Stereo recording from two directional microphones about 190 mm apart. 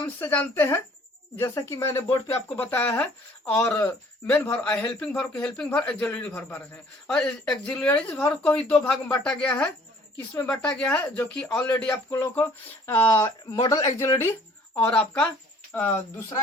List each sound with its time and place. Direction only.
0.2 s speech: 10° left (ahead or behind)
11.7 s a man's voice: 20° left (ahead or behind)
12.2 s speech: 10° left (ahead or behind)